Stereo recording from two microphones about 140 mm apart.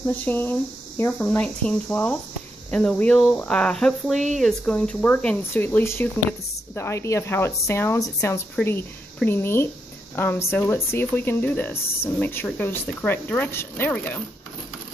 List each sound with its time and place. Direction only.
0.2 s speech: 15° left (ahead or behind)